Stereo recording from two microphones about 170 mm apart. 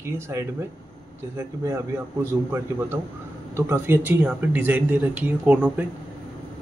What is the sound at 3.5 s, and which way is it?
Speech, 15° right (ahead or behind).